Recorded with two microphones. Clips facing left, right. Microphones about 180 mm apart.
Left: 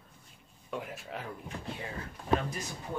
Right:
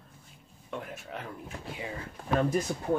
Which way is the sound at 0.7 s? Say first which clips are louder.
Even; centre (ahead or behind).